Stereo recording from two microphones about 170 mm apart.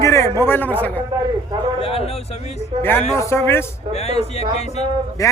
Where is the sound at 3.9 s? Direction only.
40° left (ahead or behind).